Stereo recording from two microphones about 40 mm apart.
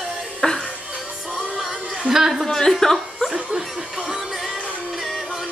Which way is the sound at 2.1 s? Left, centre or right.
Right.